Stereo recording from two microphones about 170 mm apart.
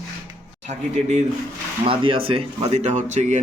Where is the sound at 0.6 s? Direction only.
40° right (ahead or behind).